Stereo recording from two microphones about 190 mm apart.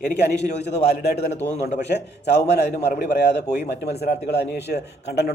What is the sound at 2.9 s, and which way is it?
A man's voice, 60° left (ahead or behind).